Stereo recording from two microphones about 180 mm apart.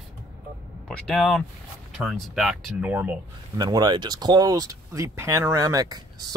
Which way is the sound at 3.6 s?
25° right (ahead or behind).